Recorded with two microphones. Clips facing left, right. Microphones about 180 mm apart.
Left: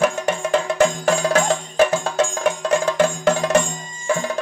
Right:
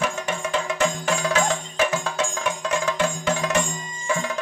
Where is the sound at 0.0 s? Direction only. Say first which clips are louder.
Left 6 dB; 40° left (ahead or behind).